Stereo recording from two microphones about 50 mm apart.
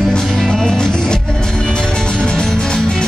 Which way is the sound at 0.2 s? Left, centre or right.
Centre.